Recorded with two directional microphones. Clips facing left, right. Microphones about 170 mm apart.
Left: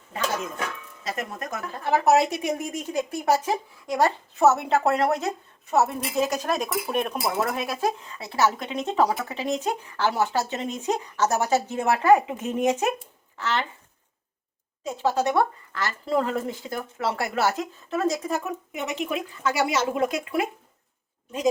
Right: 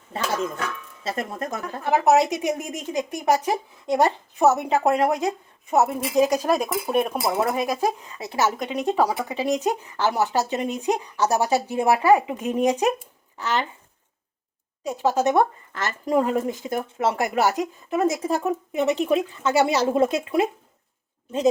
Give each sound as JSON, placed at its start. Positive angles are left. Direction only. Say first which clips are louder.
{"t": 1.0, "sound": "speech", "louder": "right 3 dB", "side_deg": -30}
{"t": 1.8, "sound": "speech", "louder": "right 1 dB", "side_deg": -15}
{"t": 14.8, "sound": "speech", "louder": "right 3 dB", "side_deg": -15}
{"t": 18.3, "sound": "speech", "louder": "right 5 dB", "side_deg": -30}